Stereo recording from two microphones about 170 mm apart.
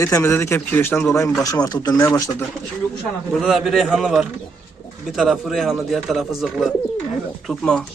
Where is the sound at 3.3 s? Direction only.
Centre (ahead or behind).